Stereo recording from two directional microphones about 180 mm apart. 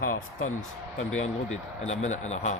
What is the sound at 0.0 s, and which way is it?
Speech, 50° left (ahead or behind).